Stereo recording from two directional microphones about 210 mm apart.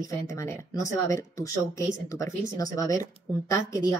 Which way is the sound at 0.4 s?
15° left (ahead or behind).